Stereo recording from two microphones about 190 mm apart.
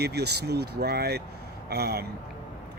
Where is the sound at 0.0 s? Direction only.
60° right (ahead or behind).